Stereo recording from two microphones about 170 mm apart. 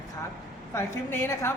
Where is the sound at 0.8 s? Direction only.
15° left (ahead or behind).